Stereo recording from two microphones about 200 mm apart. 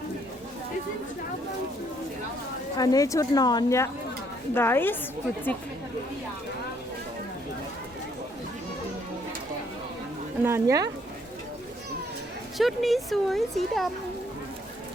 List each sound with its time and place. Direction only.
2.7 s a woman's voice: 20° left (ahead or behind)
10.4 s speech: 15° right (ahead or behind)
12.5 s speech: centre (ahead or behind)